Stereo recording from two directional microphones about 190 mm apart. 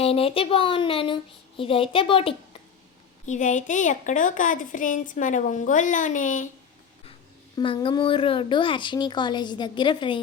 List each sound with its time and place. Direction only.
0.0 s speech: 30° left (ahead or behind)
3.2 s a woman's voice: 40° left (ahead or behind)
7.5 s speech: 25° left (ahead or behind)